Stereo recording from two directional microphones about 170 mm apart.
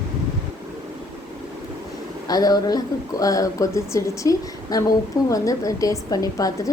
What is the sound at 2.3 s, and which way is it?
A woman's voice, 20° left (ahead or behind).